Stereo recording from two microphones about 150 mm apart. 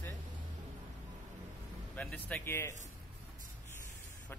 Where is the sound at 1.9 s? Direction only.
10° left (ahead or behind).